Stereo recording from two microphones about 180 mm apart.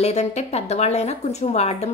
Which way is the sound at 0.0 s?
35° left (ahead or behind).